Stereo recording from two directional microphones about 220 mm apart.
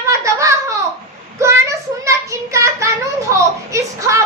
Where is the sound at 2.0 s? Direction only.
15° right (ahead or behind).